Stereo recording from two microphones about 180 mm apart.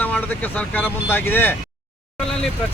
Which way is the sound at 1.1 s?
10° left (ahead or behind).